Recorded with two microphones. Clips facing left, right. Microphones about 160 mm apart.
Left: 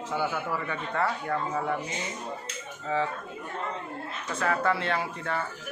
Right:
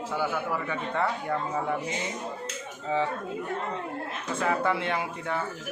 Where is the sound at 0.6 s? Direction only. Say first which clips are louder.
Right 1 dB; 15° right (ahead or behind).